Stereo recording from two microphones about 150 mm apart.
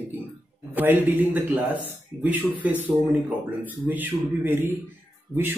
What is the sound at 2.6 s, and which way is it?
A man's voice, 10° right (ahead or behind).